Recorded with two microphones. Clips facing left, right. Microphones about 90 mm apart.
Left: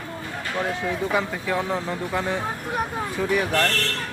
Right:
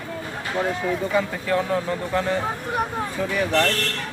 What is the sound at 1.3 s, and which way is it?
Speech, 10° left (ahead or behind).